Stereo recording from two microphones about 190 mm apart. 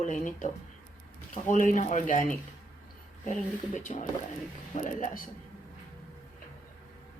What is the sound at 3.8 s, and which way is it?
Speech, 40° left (ahead or behind).